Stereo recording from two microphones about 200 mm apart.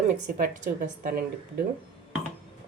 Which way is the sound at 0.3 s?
45° right (ahead or behind).